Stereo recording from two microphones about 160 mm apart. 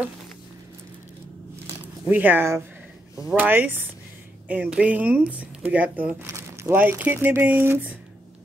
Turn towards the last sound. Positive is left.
turn(degrees=-15)  # may be behind; listen again after turning